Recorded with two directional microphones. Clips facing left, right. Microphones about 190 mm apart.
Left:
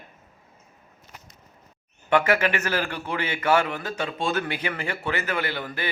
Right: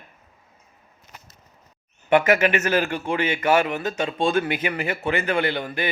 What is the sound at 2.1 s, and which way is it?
A man's voice, 20° right (ahead or behind).